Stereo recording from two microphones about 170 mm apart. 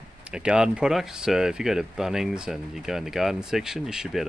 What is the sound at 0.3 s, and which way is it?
Speech, 5° right (ahead or behind).